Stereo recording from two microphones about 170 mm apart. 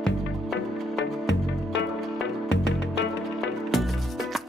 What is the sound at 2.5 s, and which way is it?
Music, 90° left.